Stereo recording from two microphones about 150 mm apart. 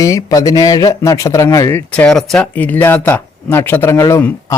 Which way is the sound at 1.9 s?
5° left (ahead or behind).